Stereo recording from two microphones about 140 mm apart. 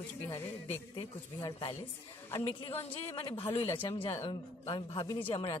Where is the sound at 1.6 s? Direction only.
45° left (ahead or behind).